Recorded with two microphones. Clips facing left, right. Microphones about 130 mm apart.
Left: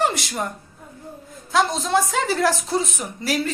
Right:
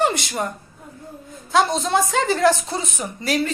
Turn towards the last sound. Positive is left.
turn(degrees=0)  # may be behind; listen again after turning